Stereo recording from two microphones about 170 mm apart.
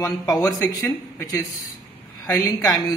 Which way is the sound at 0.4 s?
20° left (ahead or behind).